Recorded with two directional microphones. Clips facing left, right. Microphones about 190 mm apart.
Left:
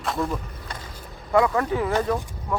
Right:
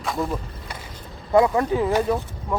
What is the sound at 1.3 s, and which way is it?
Speech, 25° right (ahead or behind).